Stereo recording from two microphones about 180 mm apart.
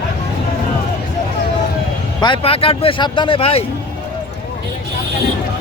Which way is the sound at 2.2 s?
30° left (ahead or behind).